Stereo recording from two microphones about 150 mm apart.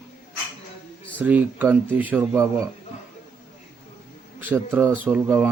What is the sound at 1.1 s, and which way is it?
Speech, 10° right (ahead or behind).